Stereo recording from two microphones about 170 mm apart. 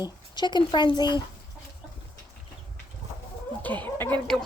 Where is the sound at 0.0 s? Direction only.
25° left (ahead or behind).